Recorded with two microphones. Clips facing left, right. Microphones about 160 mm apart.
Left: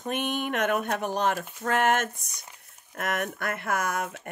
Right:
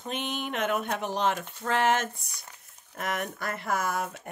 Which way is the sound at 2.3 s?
20° left (ahead or behind).